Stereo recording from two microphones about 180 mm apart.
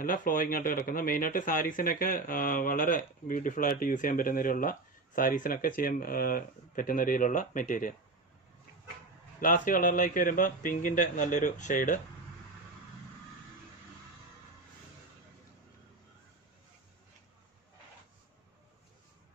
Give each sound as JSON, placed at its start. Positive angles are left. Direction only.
{"t": 0.0, "sound": "a man's voice", "side_deg": 50}
{"t": 9.4, "sound": "a man's voice", "side_deg": 50}